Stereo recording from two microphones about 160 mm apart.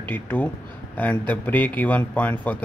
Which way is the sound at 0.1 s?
10° left (ahead or behind).